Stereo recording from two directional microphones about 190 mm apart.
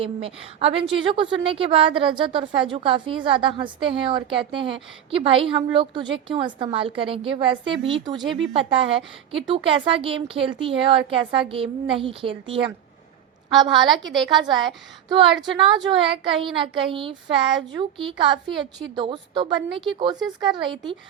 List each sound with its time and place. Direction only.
0.0 s a woman's voice: 30° right (ahead or behind)
14.2 s a woman's voice: 25° right (ahead or behind)